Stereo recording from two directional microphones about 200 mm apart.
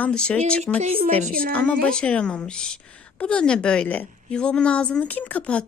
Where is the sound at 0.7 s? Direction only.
35° right (ahead or behind).